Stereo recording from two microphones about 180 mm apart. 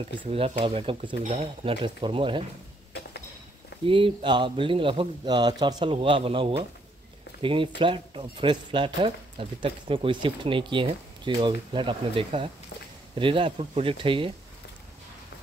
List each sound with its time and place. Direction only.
0.0 s speech: 30° right (ahead or behind)
3.8 s speech: 30° right (ahead or behind)